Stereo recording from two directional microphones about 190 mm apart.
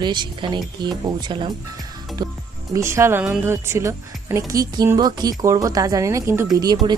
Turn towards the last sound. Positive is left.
turn(degrees=-20)  # may be behind; listen again after turning